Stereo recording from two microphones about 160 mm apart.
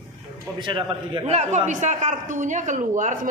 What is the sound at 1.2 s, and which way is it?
A woman's voice, 45° right (ahead or behind).